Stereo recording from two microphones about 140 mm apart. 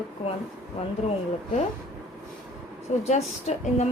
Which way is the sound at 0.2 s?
45° left (ahead or behind).